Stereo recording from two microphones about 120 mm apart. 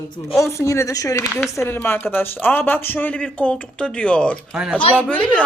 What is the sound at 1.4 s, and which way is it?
Speech, 20° left (ahead or behind).